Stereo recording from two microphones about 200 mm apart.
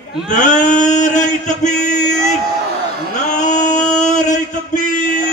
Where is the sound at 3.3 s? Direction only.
35° left (ahead or behind).